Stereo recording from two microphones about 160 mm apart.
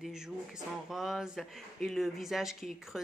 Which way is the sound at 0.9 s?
Centre (ahead or behind).